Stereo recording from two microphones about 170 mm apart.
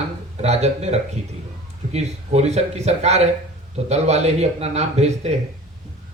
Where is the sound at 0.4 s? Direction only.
40° right (ahead or behind).